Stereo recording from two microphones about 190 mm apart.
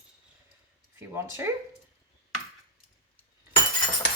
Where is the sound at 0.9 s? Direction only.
15° right (ahead or behind).